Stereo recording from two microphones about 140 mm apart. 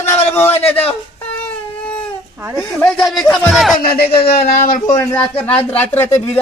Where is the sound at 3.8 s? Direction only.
90° left.